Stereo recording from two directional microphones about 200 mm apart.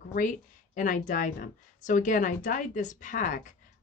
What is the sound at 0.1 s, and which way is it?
Speech, 40° left (ahead or behind).